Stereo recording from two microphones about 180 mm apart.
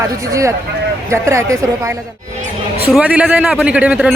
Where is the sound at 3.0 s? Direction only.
5° right (ahead or behind).